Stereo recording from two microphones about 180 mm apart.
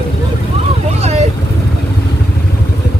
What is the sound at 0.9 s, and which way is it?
Vehicle, 35° right (ahead or behind).